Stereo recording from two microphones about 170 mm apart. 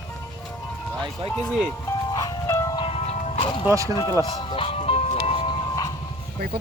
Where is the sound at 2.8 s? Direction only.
35° left (ahead or behind).